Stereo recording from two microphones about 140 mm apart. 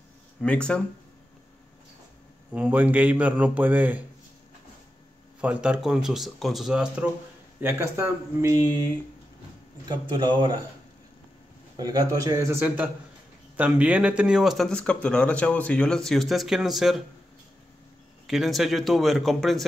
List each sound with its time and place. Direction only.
0.4 s speech: 5° left (ahead or behind)
2.5 s a man's voice: 10° right (ahead or behind)
5.4 s speech: 10° right (ahead or behind)
7.6 s a man's voice: 20° right (ahead or behind)
9.8 s a man's voice: 30° right (ahead or behind)
11.7 s a man's voice: 25° right (ahead or behind); by 17.0 s centre (ahead or behind)
18.2 s speech: centre (ahead or behind)